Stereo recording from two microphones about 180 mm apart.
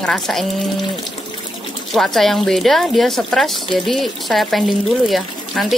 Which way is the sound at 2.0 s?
Centre (ahead or behind).